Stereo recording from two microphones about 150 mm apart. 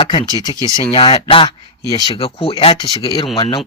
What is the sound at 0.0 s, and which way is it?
Speech, 30° left (ahead or behind).